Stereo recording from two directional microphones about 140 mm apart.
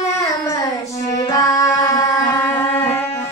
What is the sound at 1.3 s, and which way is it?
Music, 25° left (ahead or behind).